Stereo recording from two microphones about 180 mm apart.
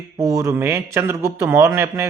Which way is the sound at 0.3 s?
15° right (ahead or behind).